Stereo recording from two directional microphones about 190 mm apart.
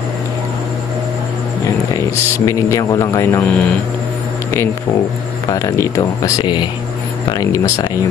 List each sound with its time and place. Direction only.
2.3 s speech: 15° left (ahead or behind)
5.5 s speech: 15° left (ahead or behind)